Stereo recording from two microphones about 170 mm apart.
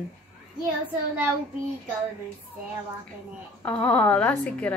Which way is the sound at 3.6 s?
10° left (ahead or behind).